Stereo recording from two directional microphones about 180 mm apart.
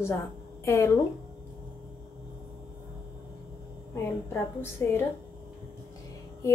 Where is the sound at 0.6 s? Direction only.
15° left (ahead or behind).